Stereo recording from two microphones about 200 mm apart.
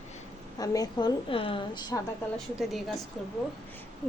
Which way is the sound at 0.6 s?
20° left (ahead or behind).